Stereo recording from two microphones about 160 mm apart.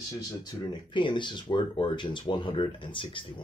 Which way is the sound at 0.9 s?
30° left (ahead or behind).